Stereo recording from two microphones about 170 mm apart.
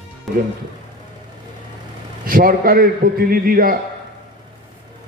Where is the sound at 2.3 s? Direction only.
55° right (ahead or behind).